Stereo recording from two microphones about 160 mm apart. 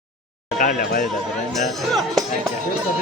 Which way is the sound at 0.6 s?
60° left (ahead or behind).